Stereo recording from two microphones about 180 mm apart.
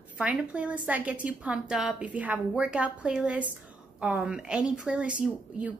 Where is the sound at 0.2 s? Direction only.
5° right (ahead or behind).